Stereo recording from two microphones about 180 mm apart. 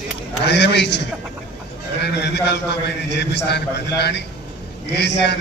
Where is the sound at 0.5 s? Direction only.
70° left (ahead or behind).